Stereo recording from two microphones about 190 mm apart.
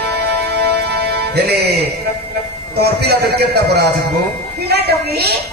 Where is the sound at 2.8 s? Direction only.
60° right (ahead or behind).